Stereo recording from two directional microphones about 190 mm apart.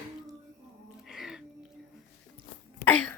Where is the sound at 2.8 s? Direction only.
10° left (ahead or behind).